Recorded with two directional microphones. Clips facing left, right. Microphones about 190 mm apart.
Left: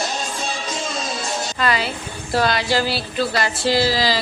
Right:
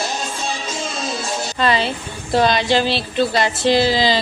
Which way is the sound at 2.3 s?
20° right (ahead or behind).